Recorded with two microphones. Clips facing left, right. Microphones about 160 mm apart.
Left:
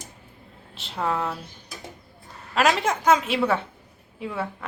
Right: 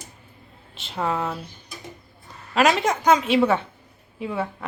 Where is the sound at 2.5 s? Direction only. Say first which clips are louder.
Right 2 dB; centre (ahead or behind).